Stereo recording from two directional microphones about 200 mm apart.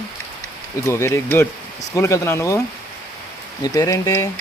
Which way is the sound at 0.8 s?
15° left (ahead or behind).